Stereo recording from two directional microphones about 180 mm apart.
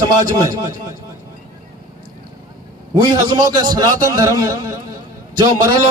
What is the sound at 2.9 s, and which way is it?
A man's voice, 25° right (ahead or behind).